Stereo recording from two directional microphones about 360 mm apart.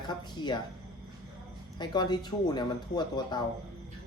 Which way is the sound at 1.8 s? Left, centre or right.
Centre.